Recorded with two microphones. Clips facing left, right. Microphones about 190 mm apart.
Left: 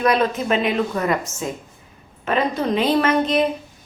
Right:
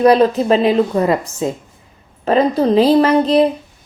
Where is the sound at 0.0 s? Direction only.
35° right (ahead or behind).